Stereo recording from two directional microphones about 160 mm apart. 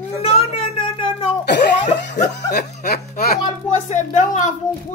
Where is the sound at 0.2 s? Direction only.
35° left (ahead or behind).